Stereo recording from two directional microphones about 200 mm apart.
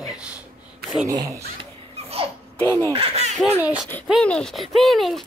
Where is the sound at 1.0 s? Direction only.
15° right (ahead or behind).